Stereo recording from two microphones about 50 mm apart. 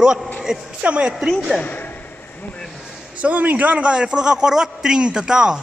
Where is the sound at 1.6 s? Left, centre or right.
Left.